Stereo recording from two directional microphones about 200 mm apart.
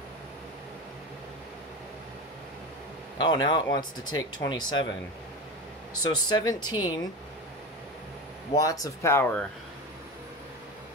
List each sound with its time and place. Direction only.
3.2 s speech: 20° left (ahead or behind)
6.0 s speech: 20° left (ahead or behind)
6.6 s speech: 90° left
8.5 s speech: 15° left (ahead or behind)